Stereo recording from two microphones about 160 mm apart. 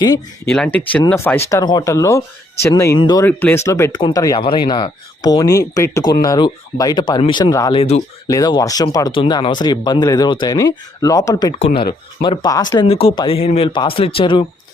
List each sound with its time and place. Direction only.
0.4 s speech: 5° left (ahead or behind); by 3.2 s 25° left (ahead or behind)
3.2 s speech: 15° left (ahead or behind)
7.8 s speech: 40° left (ahead or behind)
8.3 s speech: 25° left (ahead or behind)
12.9 s speech: 35° left (ahead or behind)